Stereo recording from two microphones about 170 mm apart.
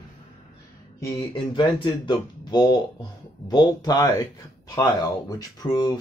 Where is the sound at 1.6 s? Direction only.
30° left (ahead or behind).